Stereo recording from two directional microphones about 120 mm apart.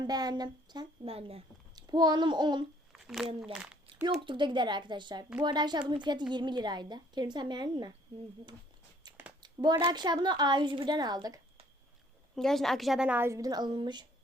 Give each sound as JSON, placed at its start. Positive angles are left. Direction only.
{"t": 0.0, "sound": "a woman's voice", "side_deg": -35}
{"t": 1.0, "sound": "speech", "side_deg": -55}
{"t": 1.7, "sound": "a child's voice", "side_deg": -35}
{"t": 2.9, "sound": "crumpling", "side_deg": 0}
{"t": 3.5, "sound": "a sound", "side_deg": -10}
{"t": 4.3, "sound": "a woman's voice", "side_deg": -40}
{"t": 9.0, "sound": "a sound", "side_deg": -35}
{"t": 9.8, "sound": "a woman's voice", "side_deg": -35}
{"t": 12.4, "sound": "a woman's voice", "side_deg": 5}
{"t": 13.1, "sound": "a woman's voice", "side_deg": -20}